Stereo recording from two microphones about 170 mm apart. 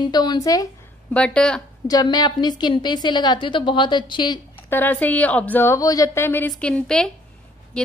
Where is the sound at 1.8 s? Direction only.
25° left (ahead or behind).